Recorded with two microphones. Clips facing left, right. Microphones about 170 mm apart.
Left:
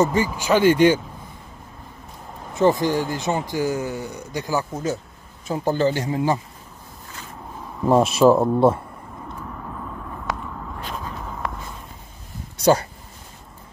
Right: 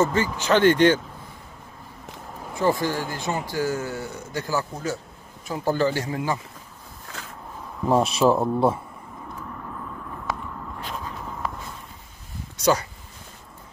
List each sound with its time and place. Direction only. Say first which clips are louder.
0.0 s speech: left 2 dB; 10° left (ahead or behind)
2.5 s speech: left 5 dB; 20° left (ahead or behind)
7.9 s speech: left 4 dB; centre (ahead or behind)
12.7 s speech: left 4 dB; 35° left (ahead or behind)